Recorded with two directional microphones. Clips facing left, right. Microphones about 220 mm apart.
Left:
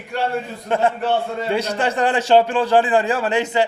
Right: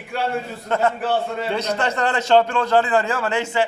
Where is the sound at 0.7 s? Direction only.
15° left (ahead or behind).